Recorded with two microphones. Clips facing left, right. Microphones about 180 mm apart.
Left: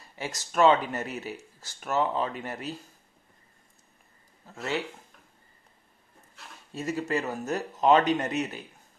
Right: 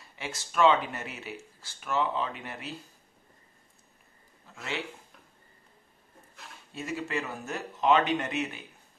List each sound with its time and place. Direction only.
0.2 s speech: 40° left (ahead or behind)
4.5 s speech: 40° left (ahead or behind)
6.7 s speech: 40° left (ahead or behind)